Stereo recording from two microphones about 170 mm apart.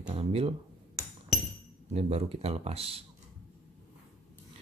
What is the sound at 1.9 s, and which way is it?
Speech, 40° right (ahead or behind).